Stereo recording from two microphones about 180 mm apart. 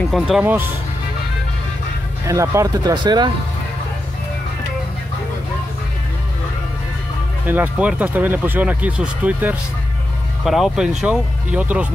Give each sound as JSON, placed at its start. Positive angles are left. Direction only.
{"t": 0.0, "sound": "speech", "side_deg": 0}
{"t": 2.2, "sound": "speech", "side_deg": -15}
{"t": 7.4, "sound": "speech", "side_deg": -10}